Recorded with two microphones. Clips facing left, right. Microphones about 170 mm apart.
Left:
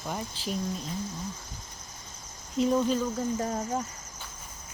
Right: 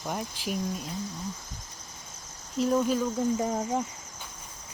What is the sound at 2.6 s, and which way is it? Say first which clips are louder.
Speech: even; 5° right (ahead or behind).